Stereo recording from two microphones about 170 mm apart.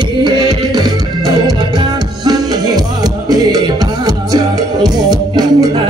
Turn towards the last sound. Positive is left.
turn(degrees=-25)  # may be behind; listen again after turning